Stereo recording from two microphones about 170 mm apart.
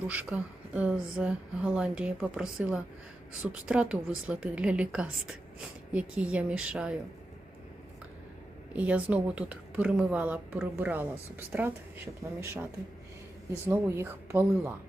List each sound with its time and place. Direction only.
0.1 s a woman's voice: 10° right (ahead or behind)
8.7 s a woman's voice: 10° right (ahead or behind)
13.7 s a woman's voice: 15° right (ahead or behind)